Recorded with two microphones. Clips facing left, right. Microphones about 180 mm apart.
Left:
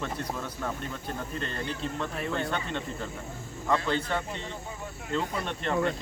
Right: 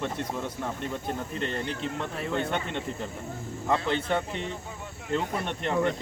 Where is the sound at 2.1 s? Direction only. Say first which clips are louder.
Right 3 dB; 25° right (ahead or behind).